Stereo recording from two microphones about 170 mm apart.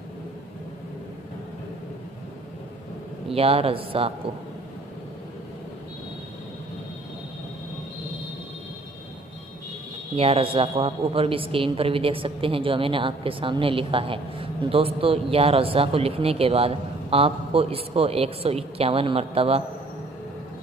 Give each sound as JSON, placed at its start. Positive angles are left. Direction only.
{"t": 3.3, "sound": "a man's voice", "side_deg": -35}
{"t": 10.1, "sound": "a man's voice", "side_deg": -35}